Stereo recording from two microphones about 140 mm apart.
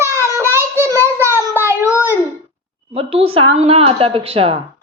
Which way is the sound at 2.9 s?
45° right (ahead or behind).